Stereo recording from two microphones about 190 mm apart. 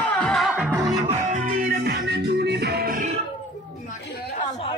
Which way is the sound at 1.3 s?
45° right (ahead or behind).